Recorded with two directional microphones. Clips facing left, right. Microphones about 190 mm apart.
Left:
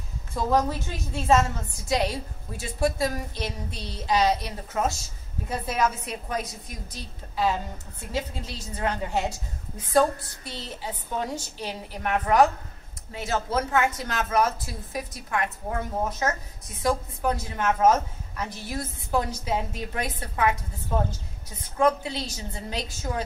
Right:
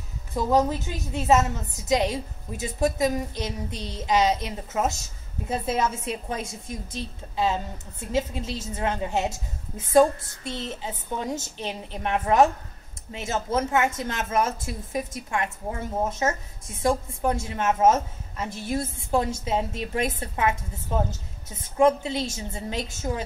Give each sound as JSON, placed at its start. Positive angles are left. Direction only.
{"t": 0.3, "sound": "a woman's voice", "side_deg": -20}